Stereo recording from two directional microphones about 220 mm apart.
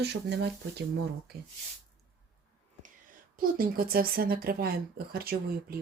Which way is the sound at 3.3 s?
40° right (ahead or behind).